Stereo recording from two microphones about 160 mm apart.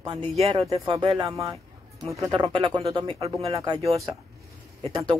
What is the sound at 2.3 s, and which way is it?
Speech, 30° right (ahead or behind).